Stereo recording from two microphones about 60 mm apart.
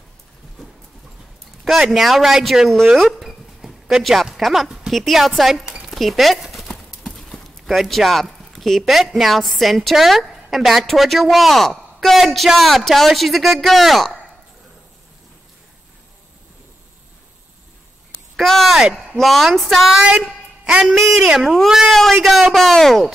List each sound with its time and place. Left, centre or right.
1.6 s speech: centre
5.9 s horse: centre
6.7 s clip-clop: centre
7.6 s speech: centre
18.4 s speech: centre
20.1 s a sound: centre
20.8 s speech: centre